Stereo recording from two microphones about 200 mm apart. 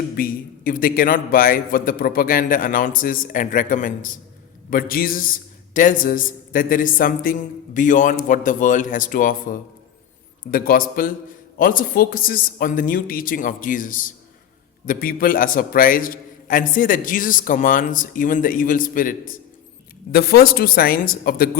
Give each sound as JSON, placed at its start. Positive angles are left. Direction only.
{"t": 0.2, "sound": "a man's voice", "side_deg": 45}